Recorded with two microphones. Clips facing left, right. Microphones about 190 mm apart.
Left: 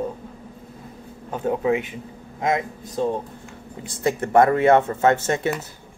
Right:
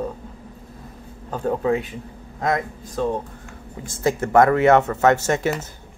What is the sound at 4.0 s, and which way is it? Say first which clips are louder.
Speech: right 1 dB; 30° left (ahead or behind).